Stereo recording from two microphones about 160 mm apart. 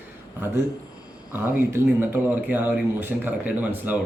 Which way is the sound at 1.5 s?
15° right (ahead or behind).